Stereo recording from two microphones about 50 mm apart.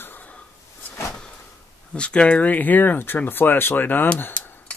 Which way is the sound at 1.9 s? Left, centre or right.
Left.